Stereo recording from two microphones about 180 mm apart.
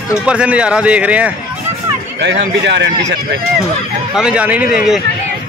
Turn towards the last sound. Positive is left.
turn(degrees=-5)  # may be behind; listen again after turning